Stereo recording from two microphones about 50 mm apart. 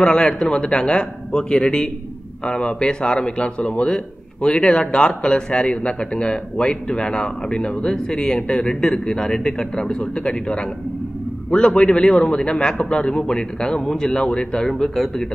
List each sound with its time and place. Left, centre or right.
0.0 s a man's voice: centre